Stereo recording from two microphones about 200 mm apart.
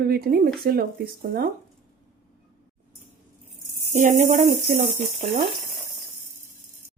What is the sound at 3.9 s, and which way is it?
Speech, 35° right (ahead or behind).